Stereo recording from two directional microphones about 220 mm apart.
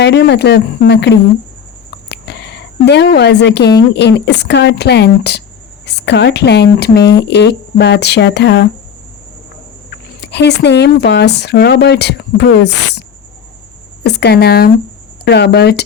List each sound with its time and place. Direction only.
0.0 s speech: 50° left (ahead or behind)
2.0 s a sound: 50° left (ahead or behind)
3.8 s speech: 50° left (ahead or behind)
10.2 s speech: 50° left (ahead or behind)